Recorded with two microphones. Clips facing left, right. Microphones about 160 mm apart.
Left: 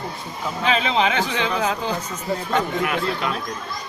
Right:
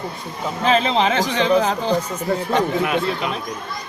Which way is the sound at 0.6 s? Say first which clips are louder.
Right 3 dB; 40° right (ahead or behind).